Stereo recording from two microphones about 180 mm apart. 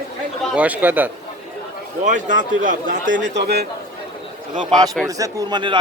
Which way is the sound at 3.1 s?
90° right.